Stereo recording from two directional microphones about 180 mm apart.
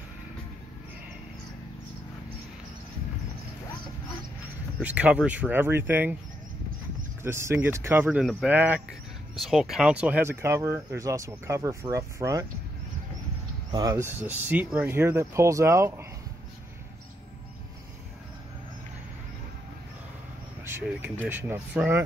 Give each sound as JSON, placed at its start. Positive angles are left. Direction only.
{"t": 4.7, "sound": "speech", "side_deg": -5}
{"t": 7.2, "sound": "speech", "side_deg": -15}
{"t": 13.7, "sound": "speech", "side_deg": -20}
{"t": 20.6, "sound": "speech", "side_deg": -10}